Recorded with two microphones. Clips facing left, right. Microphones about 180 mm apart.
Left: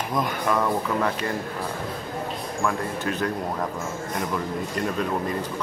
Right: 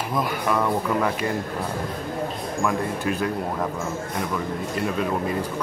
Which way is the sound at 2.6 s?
10° right (ahead or behind).